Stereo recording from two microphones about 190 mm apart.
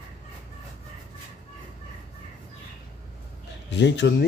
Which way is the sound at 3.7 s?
70° left (ahead or behind).